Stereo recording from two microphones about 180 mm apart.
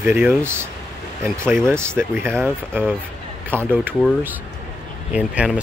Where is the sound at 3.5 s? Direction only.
10° right (ahead or behind).